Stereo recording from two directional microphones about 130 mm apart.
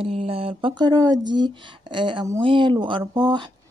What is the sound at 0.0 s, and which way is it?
A woman's voice, 50° right (ahead or behind).